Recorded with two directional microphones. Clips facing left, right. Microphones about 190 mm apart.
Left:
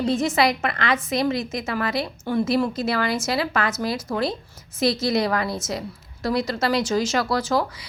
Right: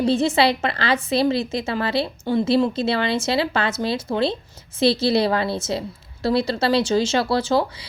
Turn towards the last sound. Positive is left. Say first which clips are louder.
# right 3 dB
turn(degrees=-30)  # may be behind; listen again after turning